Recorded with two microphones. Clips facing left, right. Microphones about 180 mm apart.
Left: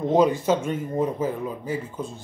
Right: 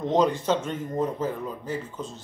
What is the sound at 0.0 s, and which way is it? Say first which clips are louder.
Speech: left 3 dB; 10° left (ahead or behind).